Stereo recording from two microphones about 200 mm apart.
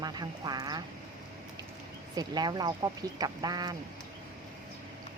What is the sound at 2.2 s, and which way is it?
A woman's voice, 20° right (ahead or behind).